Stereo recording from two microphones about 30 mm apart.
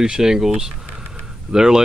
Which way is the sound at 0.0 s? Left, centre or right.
Right.